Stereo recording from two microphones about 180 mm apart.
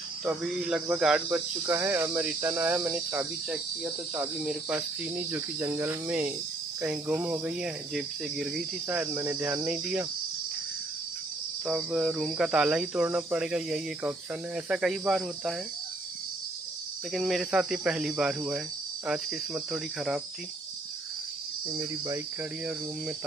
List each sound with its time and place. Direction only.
0.2 s speech: 5° right (ahead or behind)
11.6 s speech: 5° right (ahead or behind)
17.1 s speech: centre (ahead or behind)
21.6 s speech: 20° right (ahead or behind)